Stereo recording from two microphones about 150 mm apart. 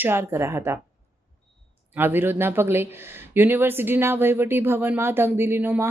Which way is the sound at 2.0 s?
15° right (ahead or behind).